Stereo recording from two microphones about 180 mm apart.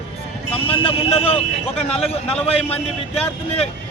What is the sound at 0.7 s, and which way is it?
Speech, 30° left (ahead or behind).